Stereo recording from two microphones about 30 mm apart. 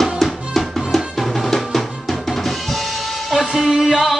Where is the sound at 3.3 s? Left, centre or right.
Centre.